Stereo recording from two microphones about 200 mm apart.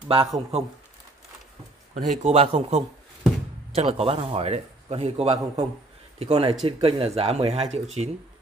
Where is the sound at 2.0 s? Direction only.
35° right (ahead or behind).